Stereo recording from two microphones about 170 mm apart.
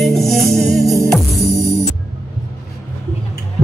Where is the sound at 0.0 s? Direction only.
Centre (ahead or behind).